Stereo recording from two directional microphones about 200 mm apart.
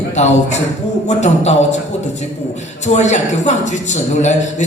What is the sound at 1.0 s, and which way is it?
Speech, 35° left (ahead or behind).